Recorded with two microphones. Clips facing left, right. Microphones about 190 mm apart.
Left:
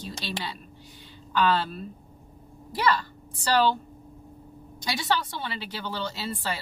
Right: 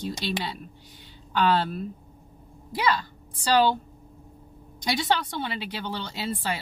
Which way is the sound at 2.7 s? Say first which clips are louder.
Even; 15° right (ahead or behind).